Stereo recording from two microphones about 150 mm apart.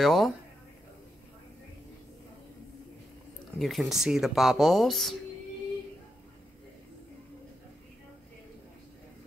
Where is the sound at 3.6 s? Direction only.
Centre (ahead or behind).